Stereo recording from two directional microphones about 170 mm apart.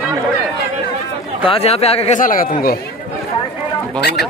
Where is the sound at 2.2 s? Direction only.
55° left (ahead or behind).